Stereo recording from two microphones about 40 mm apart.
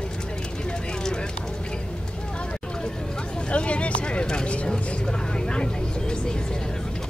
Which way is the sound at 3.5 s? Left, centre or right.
Left.